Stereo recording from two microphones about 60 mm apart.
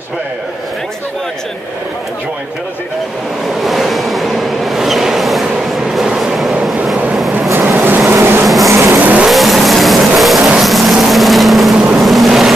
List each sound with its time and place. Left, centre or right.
3.6 s a sound: centre
7.5 s vehicle: right
9.3 s vehicle: centre
11.7 s vehicle: centre
12.0 s boat: centre